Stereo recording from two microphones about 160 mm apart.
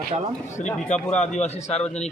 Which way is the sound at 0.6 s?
50° left (ahead or behind).